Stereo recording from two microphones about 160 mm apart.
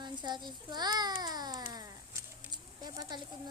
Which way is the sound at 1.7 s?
25° right (ahead or behind).